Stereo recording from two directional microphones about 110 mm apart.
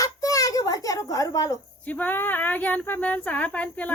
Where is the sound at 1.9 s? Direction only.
15° left (ahead or behind).